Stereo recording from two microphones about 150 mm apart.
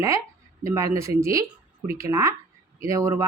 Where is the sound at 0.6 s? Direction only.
20° right (ahead or behind).